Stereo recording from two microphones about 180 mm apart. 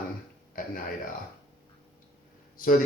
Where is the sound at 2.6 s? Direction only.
50° left (ahead or behind).